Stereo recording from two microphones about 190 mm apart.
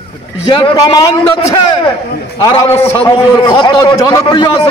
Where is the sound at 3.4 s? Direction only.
25° left (ahead or behind).